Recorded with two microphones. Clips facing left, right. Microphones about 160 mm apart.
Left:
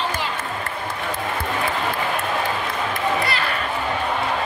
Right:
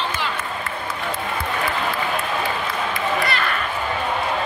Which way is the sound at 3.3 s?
30° left (ahead or behind).